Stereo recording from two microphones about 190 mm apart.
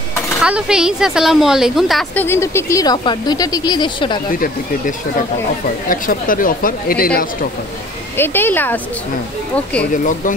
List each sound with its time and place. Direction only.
0.4 s speech: 5° right (ahead or behind)
2.2 s speech: 15° left (ahead or behind)
4.3 s speech: 45° left (ahead or behind)
8.2 s speech: 10° left (ahead or behind)